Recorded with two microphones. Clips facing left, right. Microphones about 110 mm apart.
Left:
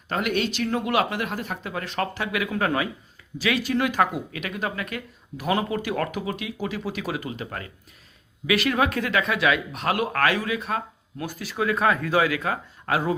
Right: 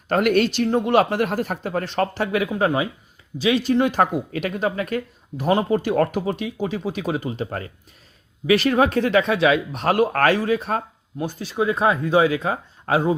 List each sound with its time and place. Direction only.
0.1 s speech: 50° right (ahead or behind)
0.9 s speech: 35° right (ahead or behind)
11.2 s speech: 25° right (ahead or behind)